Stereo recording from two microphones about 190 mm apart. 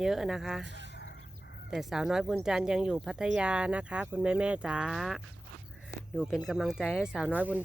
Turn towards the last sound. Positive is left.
turn(degrees=-10)  # may be behind; listen again after turning